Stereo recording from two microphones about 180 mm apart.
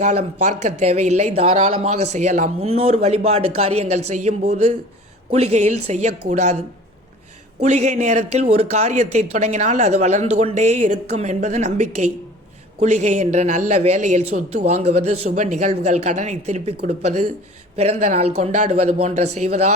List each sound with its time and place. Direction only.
0.0 s speech: 40° right (ahead or behind)
7.6 s speech: 40° right (ahead or behind)